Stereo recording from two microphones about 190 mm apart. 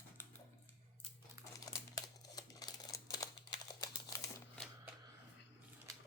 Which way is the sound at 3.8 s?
15° left (ahead or behind).